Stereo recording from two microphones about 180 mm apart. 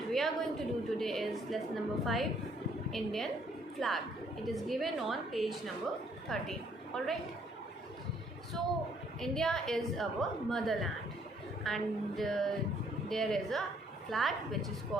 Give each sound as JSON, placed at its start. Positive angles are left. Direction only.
{"t": 0.1, "sound": "a sound", "side_deg": 0}
{"t": 0.9, "sound": "a woman's voice", "side_deg": 0}
{"t": 9.2, "sound": "a woman's voice", "side_deg": 0}